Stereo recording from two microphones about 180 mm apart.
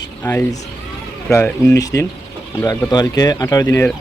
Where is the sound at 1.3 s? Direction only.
10° left (ahead or behind).